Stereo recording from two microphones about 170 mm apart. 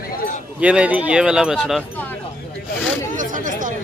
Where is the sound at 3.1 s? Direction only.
50° right (ahead or behind).